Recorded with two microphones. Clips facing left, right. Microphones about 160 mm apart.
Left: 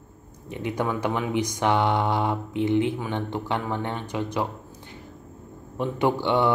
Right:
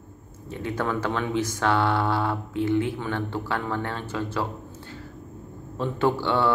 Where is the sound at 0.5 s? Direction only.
15° left (ahead or behind).